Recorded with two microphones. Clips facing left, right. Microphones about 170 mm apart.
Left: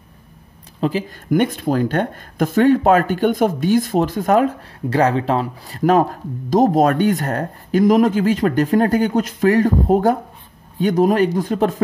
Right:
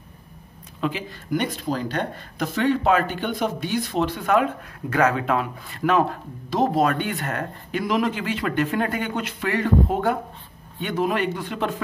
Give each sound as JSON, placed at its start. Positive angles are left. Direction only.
{"t": 0.7, "sound": "speech", "side_deg": 35}
{"t": 1.3, "sound": "speech", "side_deg": 50}